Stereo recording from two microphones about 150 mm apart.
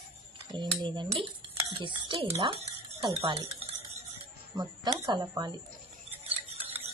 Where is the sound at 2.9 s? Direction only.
20° right (ahead or behind).